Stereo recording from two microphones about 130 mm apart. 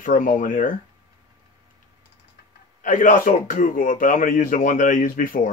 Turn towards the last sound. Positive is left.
turn(degrees=90)